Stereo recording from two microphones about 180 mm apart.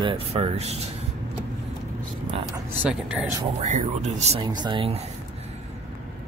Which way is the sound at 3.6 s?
40° right (ahead or behind).